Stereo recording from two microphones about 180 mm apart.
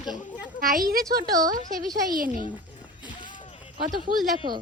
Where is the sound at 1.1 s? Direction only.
20° right (ahead or behind).